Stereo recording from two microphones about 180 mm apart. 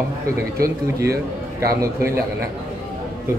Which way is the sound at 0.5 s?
15° right (ahead or behind).